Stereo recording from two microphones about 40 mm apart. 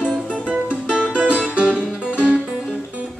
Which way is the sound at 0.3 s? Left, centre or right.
Right.